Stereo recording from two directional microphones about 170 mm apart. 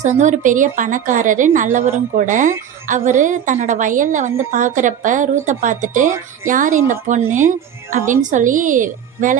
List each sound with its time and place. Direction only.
0.0 s a woman's voice: 45° right (ahead or behind)